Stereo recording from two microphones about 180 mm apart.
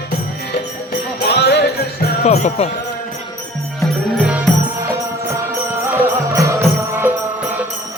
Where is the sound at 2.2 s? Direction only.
40° left (ahead or behind).